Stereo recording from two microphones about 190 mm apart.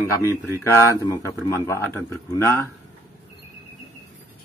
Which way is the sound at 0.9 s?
15° left (ahead or behind).